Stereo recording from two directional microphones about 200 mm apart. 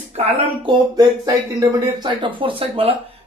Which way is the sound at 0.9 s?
20° right (ahead or behind).